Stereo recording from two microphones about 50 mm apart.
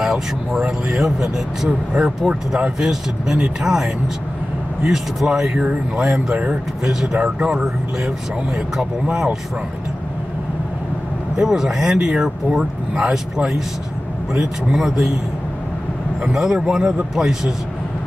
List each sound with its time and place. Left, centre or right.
0.0 s speech: centre
11.3 s speech: centre
14.3 s speech: centre
16.3 s speech: centre